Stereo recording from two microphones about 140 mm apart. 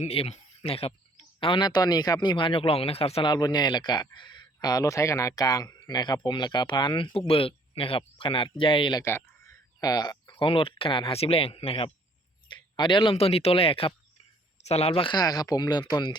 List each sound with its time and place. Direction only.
0.0 s speech: 45° left (ahead or behind)
3.3 s speech: 30° left (ahead or behind)
9.0 s speech: 20° left (ahead or behind)